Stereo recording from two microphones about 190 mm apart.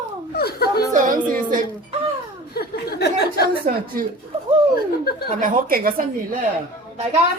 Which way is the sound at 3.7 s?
45° right (ahead or behind).